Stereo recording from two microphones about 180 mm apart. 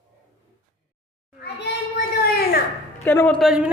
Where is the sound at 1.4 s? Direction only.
65° left (ahead or behind).